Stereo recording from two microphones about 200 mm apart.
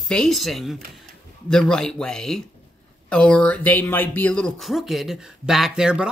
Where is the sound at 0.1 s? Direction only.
Centre (ahead or behind).